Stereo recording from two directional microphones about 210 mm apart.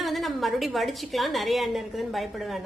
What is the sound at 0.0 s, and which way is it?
A woman's voice, centre (ahead or behind).